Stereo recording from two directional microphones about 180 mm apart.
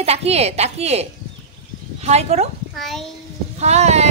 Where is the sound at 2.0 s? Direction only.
35° right (ahead or behind).